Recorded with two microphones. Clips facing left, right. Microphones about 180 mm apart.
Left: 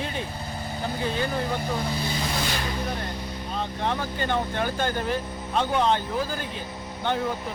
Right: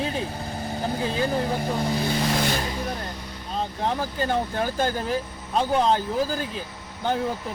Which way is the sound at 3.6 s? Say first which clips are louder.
Right 2 dB; 35° right (ahead or behind).